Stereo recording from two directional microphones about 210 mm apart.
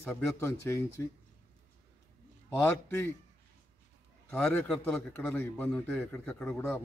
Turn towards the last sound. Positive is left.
turn(degrees=10)  # may be behind; listen again after turning